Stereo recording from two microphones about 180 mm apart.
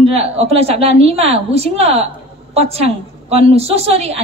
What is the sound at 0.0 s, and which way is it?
A woman's voice, 35° right (ahead or behind).